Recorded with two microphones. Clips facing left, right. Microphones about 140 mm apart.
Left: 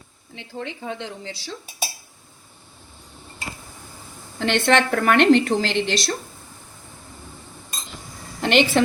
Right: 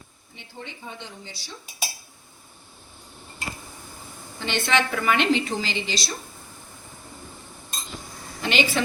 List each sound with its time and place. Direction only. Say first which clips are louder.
0.3 s speech: left 8 dB; 90° left
4.4 s a woman's voice: left 6 dB; 80° left
8.4 s a woman's voice: left 6 dB; 65° left (ahead or behind)